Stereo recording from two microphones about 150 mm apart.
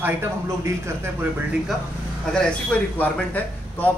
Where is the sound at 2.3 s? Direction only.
5° left (ahead or behind).